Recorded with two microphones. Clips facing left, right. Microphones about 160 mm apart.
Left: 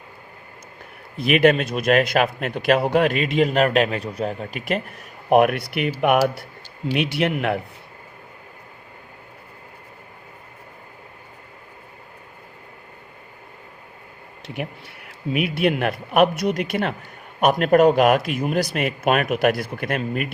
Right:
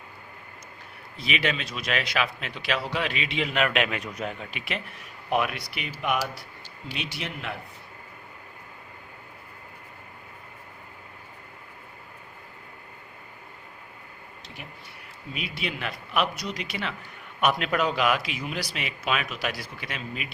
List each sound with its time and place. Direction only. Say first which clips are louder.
1.1 s a man's voice: left 12 dB; 55° left (ahead or behind)
14.4 s a man's voice: left 15 dB; 65° left (ahead or behind)